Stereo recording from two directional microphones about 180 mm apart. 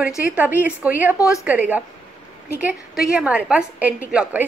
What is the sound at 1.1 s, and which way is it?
Speech, 20° left (ahead or behind).